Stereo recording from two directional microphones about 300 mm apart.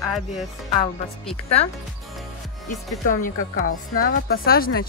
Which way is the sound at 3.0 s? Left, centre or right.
Left.